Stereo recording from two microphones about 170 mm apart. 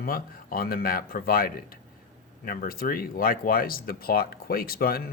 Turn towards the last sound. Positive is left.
turn(degrees=60)  # may be behind; listen again after turning